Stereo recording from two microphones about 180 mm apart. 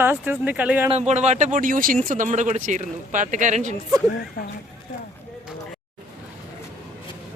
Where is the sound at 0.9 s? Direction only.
40° right (ahead or behind).